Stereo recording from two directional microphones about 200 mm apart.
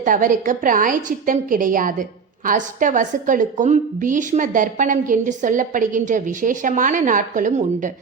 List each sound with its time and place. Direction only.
0.0 s a woman's voice: 40° right (ahead or behind)